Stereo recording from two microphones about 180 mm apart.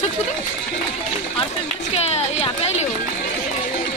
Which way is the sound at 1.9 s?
35° left (ahead or behind).